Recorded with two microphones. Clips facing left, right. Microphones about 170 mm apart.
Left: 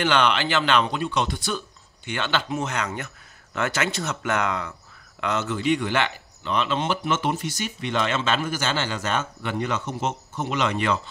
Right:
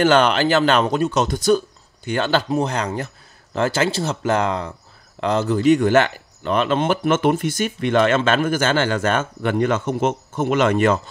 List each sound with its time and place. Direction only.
0.0 s speech: 45° right (ahead or behind)